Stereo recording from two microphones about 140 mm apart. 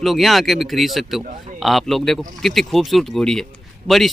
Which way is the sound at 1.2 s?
60° right (ahead or behind).